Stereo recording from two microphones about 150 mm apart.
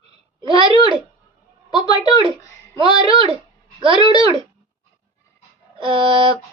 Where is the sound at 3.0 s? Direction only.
35° right (ahead or behind).